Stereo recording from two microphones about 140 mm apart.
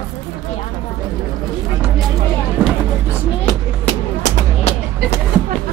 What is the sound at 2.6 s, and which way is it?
Music, 10° right (ahead or behind).